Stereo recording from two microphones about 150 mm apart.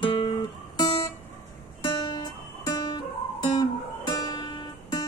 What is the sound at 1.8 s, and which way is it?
Music, 30° left (ahead or behind).